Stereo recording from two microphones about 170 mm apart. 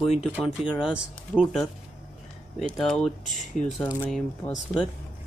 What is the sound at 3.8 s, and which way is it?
Speech, 10° left (ahead or behind).